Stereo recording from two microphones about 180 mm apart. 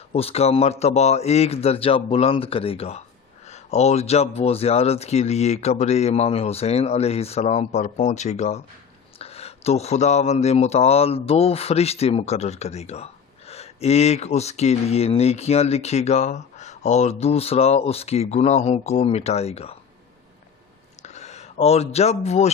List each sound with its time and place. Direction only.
0.1 s speech: 35° left (ahead or behind)
21.0 s speech: 40° left (ahead or behind)